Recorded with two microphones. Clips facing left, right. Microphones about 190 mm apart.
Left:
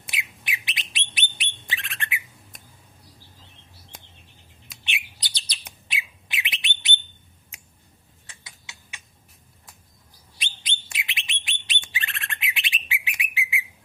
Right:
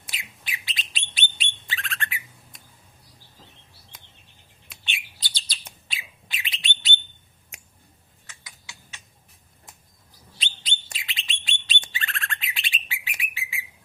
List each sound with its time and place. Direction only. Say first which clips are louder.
0.0 s bird: left 4 dB; 20° left (ahead or behind)
4.8 s bird: left 2 dB; 15° left (ahead or behind)
8.3 s a sound: even; 25° left (ahead or behind)
10.3 s bird: right 1 dB; 15° left (ahead or behind)